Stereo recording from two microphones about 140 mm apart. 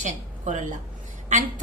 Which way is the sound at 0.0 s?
60° right (ahead or behind).